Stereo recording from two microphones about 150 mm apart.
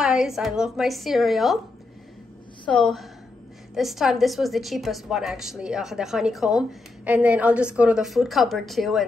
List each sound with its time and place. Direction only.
0.0 s a woman's voice: 5° right (ahead or behind)
2.6 s a woman's voice: 5° left (ahead or behind)